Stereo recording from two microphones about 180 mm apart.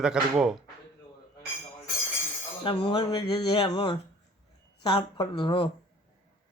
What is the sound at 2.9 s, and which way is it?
Speech, 25° left (ahead or behind).